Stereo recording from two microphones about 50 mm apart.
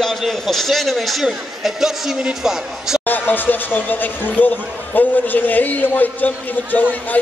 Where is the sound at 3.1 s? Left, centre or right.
Left.